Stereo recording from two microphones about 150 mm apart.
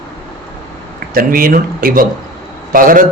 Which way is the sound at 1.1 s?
75° right (ahead or behind).